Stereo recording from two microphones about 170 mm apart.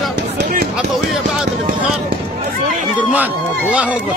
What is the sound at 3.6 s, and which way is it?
Speech, 10° right (ahead or behind).